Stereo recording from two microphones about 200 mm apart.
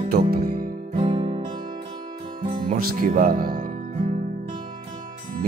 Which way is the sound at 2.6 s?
45° right (ahead or behind).